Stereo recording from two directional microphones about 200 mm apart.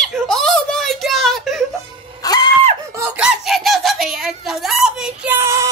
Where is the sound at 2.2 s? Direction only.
20° left (ahead or behind).